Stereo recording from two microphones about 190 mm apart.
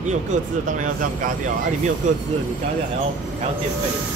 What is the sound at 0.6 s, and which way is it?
Speech, 45° right (ahead or behind).